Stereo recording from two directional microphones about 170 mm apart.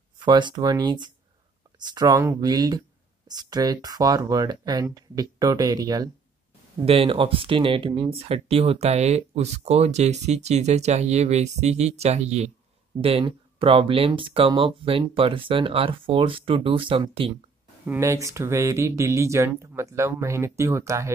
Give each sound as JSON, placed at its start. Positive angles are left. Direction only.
{"t": 0.2, "sound": "speech", "side_deg": -25}
{"t": 6.9, "sound": "speech", "side_deg": -35}
{"t": 12.9, "sound": "speech", "side_deg": -20}
{"t": 13.6, "sound": "speech", "side_deg": -30}
{"t": 17.8, "sound": "speech", "side_deg": -15}